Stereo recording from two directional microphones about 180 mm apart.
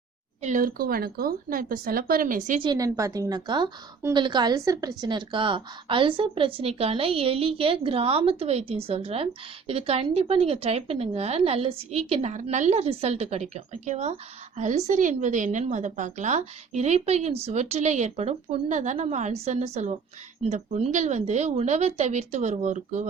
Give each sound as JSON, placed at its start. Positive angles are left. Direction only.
{"t": 0.4, "sound": "speech", "side_deg": -50}
{"t": 2.6, "sound": "a woman's voice", "side_deg": -20}